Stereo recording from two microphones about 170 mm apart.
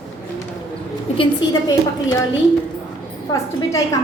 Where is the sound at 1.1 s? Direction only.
30° left (ahead or behind).